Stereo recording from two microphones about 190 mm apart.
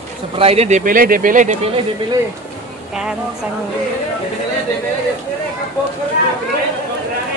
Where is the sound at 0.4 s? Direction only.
30° right (ahead or behind).